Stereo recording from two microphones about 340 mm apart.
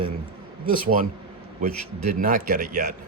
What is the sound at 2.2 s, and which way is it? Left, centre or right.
Speech, right.